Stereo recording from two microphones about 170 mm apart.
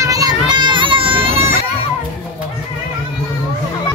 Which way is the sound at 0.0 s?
20° right (ahead or behind).